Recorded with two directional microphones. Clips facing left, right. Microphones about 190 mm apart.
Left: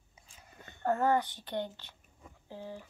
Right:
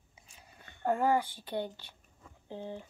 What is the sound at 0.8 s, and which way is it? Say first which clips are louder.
Speech: even; 10° right (ahead or behind).